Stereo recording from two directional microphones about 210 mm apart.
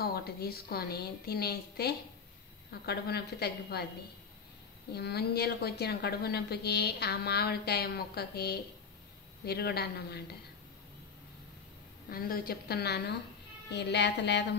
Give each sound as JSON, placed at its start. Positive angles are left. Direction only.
{"t": 0.0, "sound": "a woman's voice", "side_deg": 50}
{"t": 4.9, "sound": "a woman's voice", "side_deg": 50}
{"t": 12.1, "sound": "a woman's voice", "side_deg": 45}